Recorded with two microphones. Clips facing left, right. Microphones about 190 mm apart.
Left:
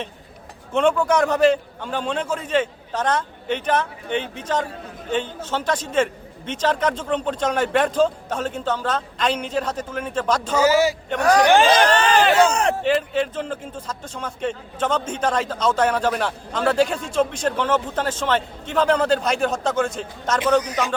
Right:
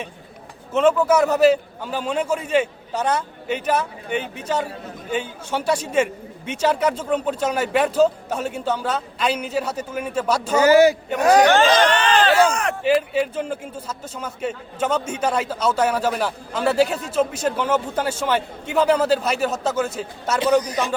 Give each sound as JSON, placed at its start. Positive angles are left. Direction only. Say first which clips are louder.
{"t": 0.7, "sound": "a man's voice", "louder": "right 2 dB", "side_deg": -5}
{"t": 10.6, "sound": "a man's voice", "louder": "right 5 dB", "side_deg": -60}
{"t": 11.2, "sound": "speech", "louder": "right 2 dB", "side_deg": -20}
{"t": 11.4, "sound": "speech", "louder": "left 1 dB", "side_deg": 15}
{"t": 11.9, "sound": "a sound", "louder": "left 1 dB", "side_deg": 35}
{"t": 12.4, "sound": "speech", "louder": "left 1 dB", "side_deg": 30}
{"t": 12.8, "sound": "a man's voice", "louder": "right 1 dB", "side_deg": -10}